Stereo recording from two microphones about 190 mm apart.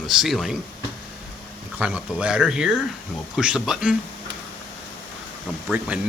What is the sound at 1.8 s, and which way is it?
Speech, 5° right (ahead or behind).